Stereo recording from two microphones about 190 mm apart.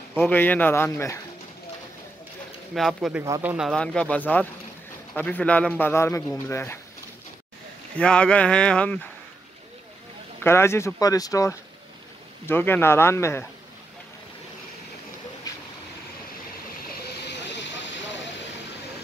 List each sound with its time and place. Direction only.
0.2 s a man's voice: 10° left (ahead or behind)
2.7 s speech: centre (ahead or behind)
3.3 s speech: 15° right (ahead or behind)
3.5 s a man's voice: centre (ahead or behind)
8.0 s speech: 5° left (ahead or behind)
10.4 s a man's voice: 15° left (ahead or behind)
17.0 s hiss: 65° left (ahead or behind)